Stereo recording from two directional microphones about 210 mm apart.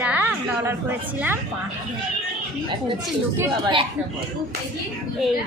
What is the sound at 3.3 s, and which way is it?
Speech, 15° right (ahead or behind).